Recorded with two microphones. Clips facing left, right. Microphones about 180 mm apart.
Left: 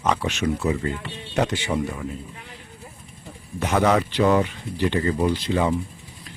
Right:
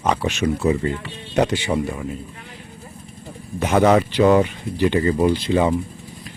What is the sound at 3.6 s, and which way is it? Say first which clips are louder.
Speech: right 4 dB; 15° right (ahead or behind).